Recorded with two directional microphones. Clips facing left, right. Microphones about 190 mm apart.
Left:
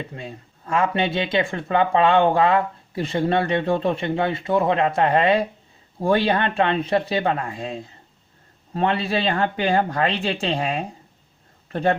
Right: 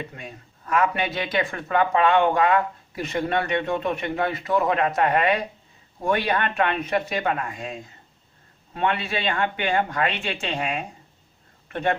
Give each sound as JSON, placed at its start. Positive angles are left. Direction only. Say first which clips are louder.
{"t": 0.0, "sound": "speech", "louder": "left 3 dB", "side_deg": 30}